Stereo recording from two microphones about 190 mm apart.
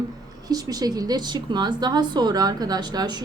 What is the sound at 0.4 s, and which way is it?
A woman's voice, 20° right (ahead or behind).